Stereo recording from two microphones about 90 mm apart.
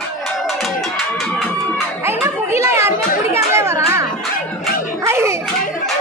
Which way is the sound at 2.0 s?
30° right (ahead or behind).